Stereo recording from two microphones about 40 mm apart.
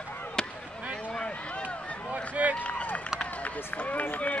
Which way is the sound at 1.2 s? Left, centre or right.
Left.